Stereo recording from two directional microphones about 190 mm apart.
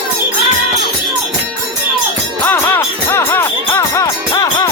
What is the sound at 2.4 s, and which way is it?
Music, 10° left (ahead or behind).